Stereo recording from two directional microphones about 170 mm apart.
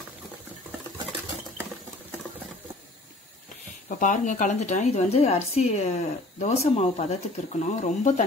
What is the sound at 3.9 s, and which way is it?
Speech, 50° left (ahead or behind).